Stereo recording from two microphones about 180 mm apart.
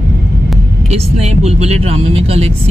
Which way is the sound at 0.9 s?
35° right (ahead or behind).